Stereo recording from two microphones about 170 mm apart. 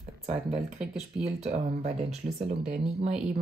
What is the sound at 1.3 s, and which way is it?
Speech, 40° right (ahead or behind).